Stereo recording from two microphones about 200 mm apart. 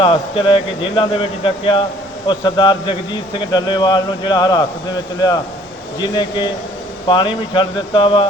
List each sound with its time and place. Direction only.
0.0 s speech: 25° left (ahead or behind)
6.0 s speech: 20° left (ahead or behind)